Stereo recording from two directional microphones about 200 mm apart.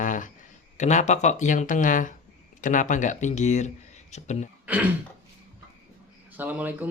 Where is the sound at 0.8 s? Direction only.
35° left (ahead or behind).